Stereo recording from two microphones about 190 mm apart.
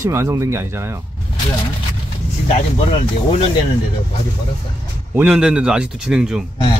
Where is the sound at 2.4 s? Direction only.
35° left (ahead or behind).